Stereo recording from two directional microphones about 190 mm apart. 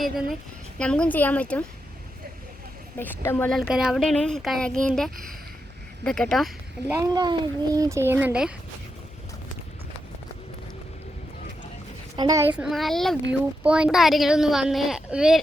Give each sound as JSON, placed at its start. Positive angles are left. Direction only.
{"t": 0.0, "sound": "a woman's voice", "side_deg": 0}
{"t": 3.0, "sound": "speech", "side_deg": 10}
{"t": 3.7, "sound": "a woman's voice", "side_deg": -5}
{"t": 6.8, "sound": "speech", "side_deg": -20}
{"t": 12.1, "sound": "a woman's voice", "side_deg": -20}